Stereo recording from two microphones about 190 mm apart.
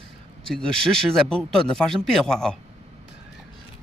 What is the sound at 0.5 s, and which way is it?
Speech, 5° left (ahead or behind).